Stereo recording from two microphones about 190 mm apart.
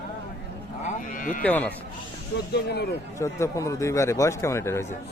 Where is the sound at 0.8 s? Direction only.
40° left (ahead or behind).